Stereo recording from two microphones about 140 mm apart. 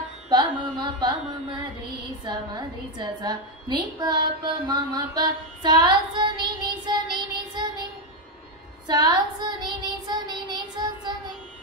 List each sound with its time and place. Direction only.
0.3 s carnatic music: 30° right (ahead or behind)
2.2 s a woman's voice: 30° right (ahead or behind)
8.8 s child singing: 30° right (ahead or behind)